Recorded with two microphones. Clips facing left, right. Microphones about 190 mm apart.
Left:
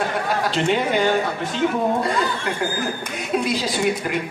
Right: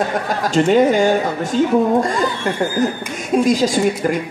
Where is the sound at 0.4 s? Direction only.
45° right (ahead or behind).